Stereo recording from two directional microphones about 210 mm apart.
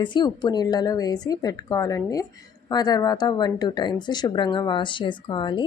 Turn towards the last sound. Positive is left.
turn(degrees=20)  # may be behind; listen again after turning